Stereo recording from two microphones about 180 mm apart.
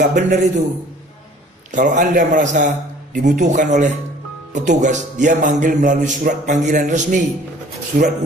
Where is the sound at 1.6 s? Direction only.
45° right (ahead or behind).